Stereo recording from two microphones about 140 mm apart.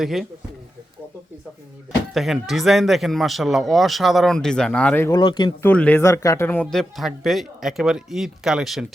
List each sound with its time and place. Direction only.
0.0 s speech: centre (ahead or behind)
2.1 s speech: centre (ahead or behind)
5.0 s speech: 30° left (ahead or behind)
5.6 s speech: 10° left (ahead or behind)
6.7 s speech: centre (ahead or behind)